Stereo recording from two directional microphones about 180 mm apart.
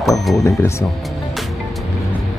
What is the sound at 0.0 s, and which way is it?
Speech, centre (ahead or behind).